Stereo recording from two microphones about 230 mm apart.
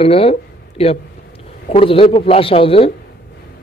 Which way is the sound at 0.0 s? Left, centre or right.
Left.